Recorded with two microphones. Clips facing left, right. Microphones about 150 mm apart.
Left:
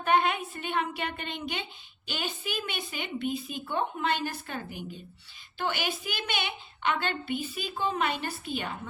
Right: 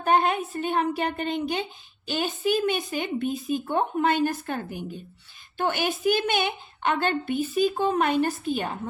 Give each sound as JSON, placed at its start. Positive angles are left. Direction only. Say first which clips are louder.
{"t": 0.0, "sound": "a woman's voice", "louder": "right 3 dB", "side_deg": -40}